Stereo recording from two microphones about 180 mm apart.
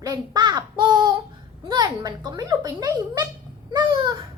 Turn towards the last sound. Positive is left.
turn(degrees=-25)  # may be behind; listen again after turning